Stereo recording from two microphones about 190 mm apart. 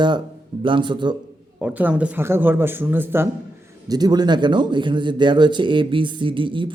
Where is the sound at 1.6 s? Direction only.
10° right (ahead or behind).